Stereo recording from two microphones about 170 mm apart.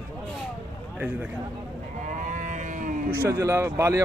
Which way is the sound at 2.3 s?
50° right (ahead or behind).